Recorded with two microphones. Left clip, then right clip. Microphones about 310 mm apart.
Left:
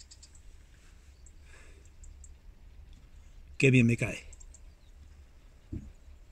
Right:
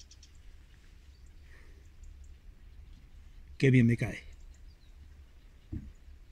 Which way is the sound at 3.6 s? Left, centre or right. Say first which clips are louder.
Left 2 dB; centre.